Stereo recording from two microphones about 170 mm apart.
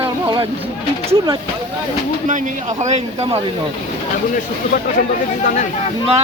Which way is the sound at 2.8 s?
40° right (ahead or behind).